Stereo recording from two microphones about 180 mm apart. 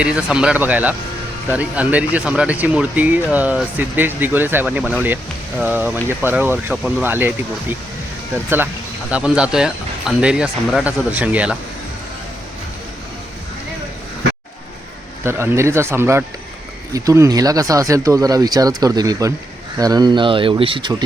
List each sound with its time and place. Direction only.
0.0 s speech: 5° right (ahead or behind)
15.2 s speech: 15° right (ahead or behind); by 20.9 s 30° right (ahead or behind)